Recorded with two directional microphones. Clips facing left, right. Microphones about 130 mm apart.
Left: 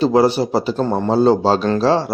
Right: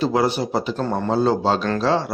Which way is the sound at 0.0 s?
30° left (ahead or behind).